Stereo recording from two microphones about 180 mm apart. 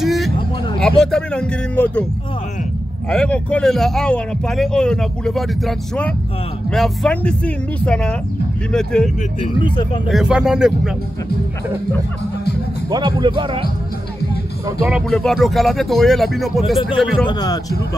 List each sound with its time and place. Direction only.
0.0 s vehicle: centre (ahead or behind)
0.7 s a man's voice: 5° left (ahead or behind)
3.1 s a man's voice: 5° left (ahead or behind)
9.4 s a man's voice: 25° left (ahead or behind)
10.0 s a man's voice: 5° right (ahead or behind)
12.9 s speech: 25° right (ahead or behind)
14.9 s a man's voice: centre (ahead or behind)
17.3 s a man's voice: 20° left (ahead or behind)